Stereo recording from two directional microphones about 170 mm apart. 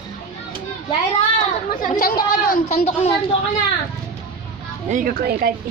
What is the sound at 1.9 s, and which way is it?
Speech, 55° left (ahead or behind).